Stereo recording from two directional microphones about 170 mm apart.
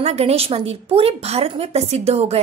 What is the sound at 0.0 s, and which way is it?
Speech, 40° right (ahead or behind).